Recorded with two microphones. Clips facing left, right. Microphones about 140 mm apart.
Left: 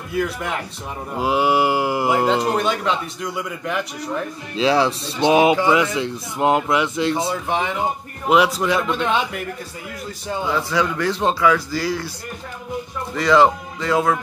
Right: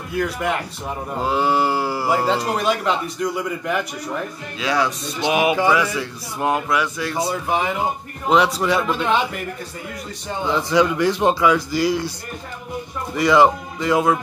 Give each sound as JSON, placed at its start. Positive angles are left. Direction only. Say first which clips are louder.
{"t": 0.2, "sound": "speech", "louder": "right 2 dB", "side_deg": 0}
{"t": 1.2, "sound": "mantra", "louder": "left 2 dB", "side_deg": 15}
{"t": 2.5, "sound": "speech", "louder": "even", "side_deg": 0}
{"t": 4.6, "sound": "speech", "louder": "left 4 dB", "side_deg": 25}
{"t": 7.2, "sound": "speech", "louder": "right 1 dB", "side_deg": -5}
{"t": 10.5, "sound": "speech", "louder": "right 5 dB", "side_deg": -15}
{"t": 13.1, "sound": "speech", "louder": "even", "side_deg": -10}